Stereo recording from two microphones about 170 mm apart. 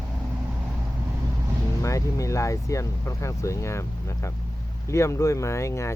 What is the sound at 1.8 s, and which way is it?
Speech, 20° left (ahead or behind).